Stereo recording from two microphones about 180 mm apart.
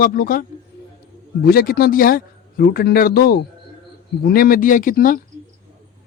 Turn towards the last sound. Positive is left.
turn(degrees=50)  # may be behind; listen again after turning